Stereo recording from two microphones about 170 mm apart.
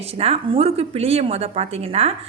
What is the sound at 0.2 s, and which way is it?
A woman's voice, 35° right (ahead or behind).